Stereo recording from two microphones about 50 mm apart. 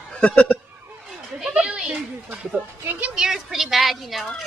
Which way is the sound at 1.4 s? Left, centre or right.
Centre.